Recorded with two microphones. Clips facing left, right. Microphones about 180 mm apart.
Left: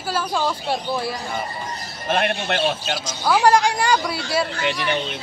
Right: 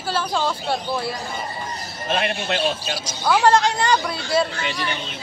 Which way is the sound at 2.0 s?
55° left (ahead or behind).